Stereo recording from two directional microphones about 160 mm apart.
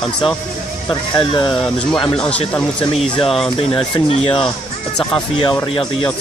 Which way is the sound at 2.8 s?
35° left (ahead or behind).